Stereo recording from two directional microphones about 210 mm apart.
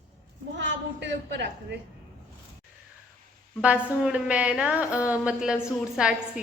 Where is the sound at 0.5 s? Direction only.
55° right (ahead or behind).